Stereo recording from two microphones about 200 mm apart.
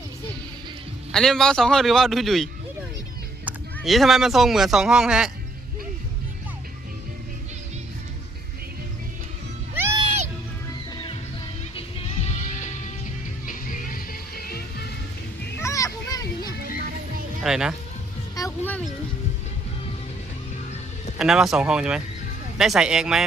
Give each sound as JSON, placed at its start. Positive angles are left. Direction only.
{"t": 1.1, "sound": "speech", "side_deg": 0}
{"t": 9.7, "sound": "music", "side_deg": -10}
{"t": 10.0, "sound": "music", "side_deg": -30}
{"t": 11.8, "sound": "music", "side_deg": 30}
{"t": 15.5, "sound": "children playing", "side_deg": 15}
{"t": 17.4, "sound": "speech", "side_deg": -5}
{"t": 18.3, "sound": "music", "side_deg": 15}
{"t": 21.2, "sound": "speech", "side_deg": -5}